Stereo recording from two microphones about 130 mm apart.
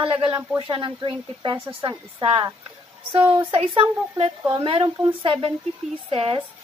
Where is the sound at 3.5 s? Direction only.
40° right (ahead or behind).